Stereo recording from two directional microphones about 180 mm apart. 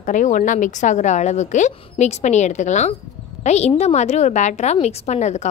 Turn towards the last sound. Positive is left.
turn(degrees=40)  # may be behind; listen again after turning